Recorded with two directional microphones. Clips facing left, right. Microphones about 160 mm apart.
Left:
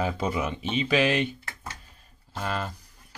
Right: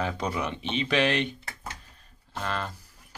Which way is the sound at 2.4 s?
10° left (ahead or behind).